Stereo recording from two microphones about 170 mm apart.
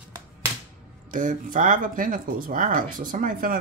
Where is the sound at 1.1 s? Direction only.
50° right (ahead or behind).